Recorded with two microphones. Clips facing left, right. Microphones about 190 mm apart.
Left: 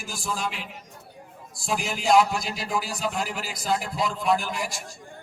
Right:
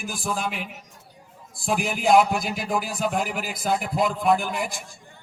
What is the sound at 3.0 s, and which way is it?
A man's voice, 55° right (ahead or behind).